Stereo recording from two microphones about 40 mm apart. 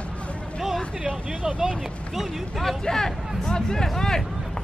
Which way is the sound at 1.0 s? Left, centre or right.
Right.